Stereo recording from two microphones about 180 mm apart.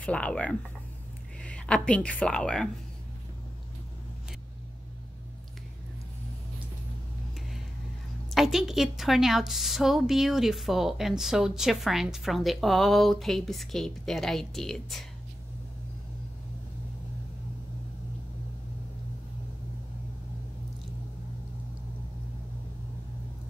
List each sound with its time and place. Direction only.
0.0 s speech: 5° left (ahead or behind)
8.3 s a woman's voice: centre (ahead or behind)